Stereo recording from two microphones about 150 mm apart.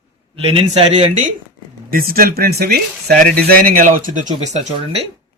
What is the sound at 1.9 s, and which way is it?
Speech, 75° right (ahead or behind).